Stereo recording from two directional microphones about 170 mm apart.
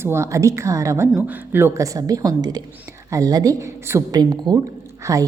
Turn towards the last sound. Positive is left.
turn(degrees=-15)  # may be behind; listen again after turning